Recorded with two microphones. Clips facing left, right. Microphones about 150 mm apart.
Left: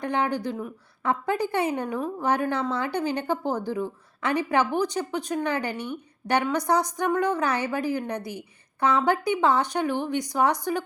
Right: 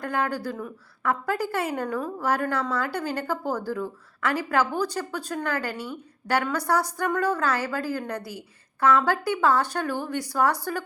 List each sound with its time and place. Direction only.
0.0 s a woman's voice: 20° left (ahead or behind)